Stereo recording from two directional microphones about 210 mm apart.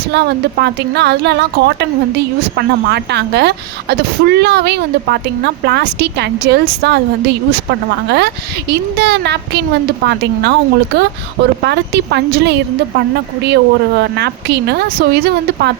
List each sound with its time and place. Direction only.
0.1 s a woman's voice: 55° right (ahead or behind)